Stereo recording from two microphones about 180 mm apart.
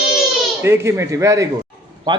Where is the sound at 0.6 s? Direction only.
15° right (ahead or behind).